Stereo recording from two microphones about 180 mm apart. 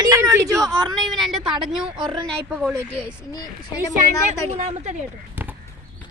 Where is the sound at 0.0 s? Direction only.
15° right (ahead or behind).